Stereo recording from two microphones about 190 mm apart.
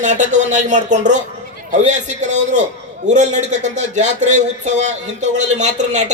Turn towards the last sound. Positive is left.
turn(degrees=-40)  # may be behind; listen again after turning